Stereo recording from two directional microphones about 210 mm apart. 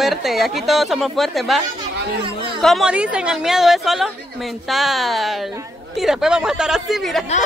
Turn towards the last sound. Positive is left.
turn(degrees=0)  # may be behind; listen again after turning